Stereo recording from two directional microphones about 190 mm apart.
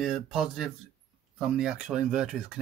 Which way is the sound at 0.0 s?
5° right (ahead or behind).